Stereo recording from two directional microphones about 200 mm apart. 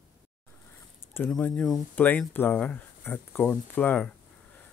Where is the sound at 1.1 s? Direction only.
10° left (ahead or behind).